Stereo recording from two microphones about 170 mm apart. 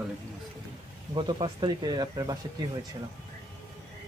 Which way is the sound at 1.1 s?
30° right (ahead or behind).